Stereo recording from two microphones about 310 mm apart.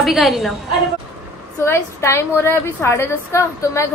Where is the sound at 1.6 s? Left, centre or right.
Centre.